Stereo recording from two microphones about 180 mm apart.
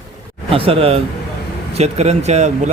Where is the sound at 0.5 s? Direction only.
30° right (ahead or behind).